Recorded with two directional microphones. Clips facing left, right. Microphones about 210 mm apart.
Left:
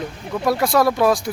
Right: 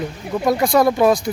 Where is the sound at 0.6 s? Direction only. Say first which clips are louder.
Right 2 dB; centre (ahead or behind).